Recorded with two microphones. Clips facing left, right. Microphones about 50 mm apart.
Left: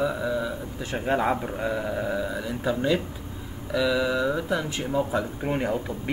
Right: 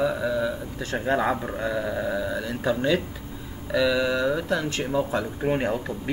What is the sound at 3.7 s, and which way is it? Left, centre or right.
Speech, centre.